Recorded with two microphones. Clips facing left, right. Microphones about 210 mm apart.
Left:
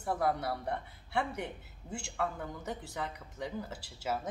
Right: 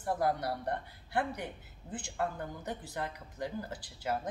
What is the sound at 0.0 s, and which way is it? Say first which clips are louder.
A woman's voice: even; centre (ahead or behind).